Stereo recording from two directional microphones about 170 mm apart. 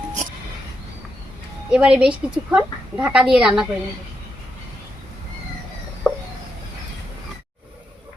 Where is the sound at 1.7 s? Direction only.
5° right (ahead or behind).